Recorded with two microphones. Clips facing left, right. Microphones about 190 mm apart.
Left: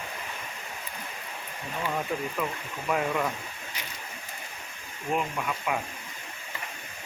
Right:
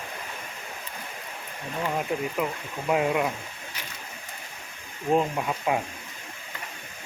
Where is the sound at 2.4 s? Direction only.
20° right (ahead or behind).